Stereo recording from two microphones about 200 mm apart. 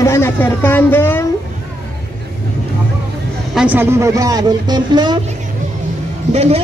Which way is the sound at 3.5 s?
5° right (ahead or behind).